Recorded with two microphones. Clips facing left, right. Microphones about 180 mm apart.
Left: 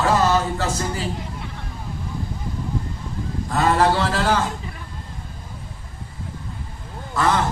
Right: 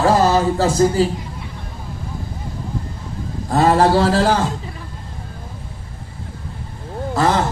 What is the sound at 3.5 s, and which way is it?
Speech, 35° right (ahead or behind).